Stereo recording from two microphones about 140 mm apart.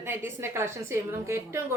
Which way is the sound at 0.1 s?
20° right (ahead or behind).